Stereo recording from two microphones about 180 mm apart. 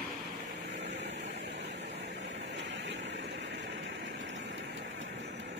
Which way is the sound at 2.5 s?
85° right.